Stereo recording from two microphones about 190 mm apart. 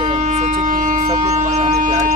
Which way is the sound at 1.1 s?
35° right (ahead or behind).